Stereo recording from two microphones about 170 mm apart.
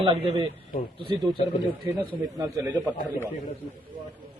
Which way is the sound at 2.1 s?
20° right (ahead or behind).